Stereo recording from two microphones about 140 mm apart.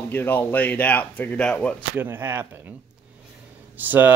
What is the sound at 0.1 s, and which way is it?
Speech, 15° left (ahead or behind).